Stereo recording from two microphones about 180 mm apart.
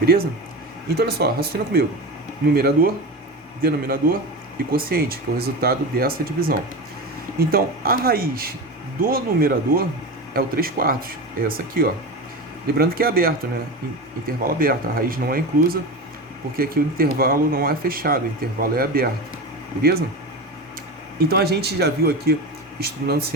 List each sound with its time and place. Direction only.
0.0 s speech: 55° right (ahead or behind)
21.2 s speech: 60° right (ahead or behind)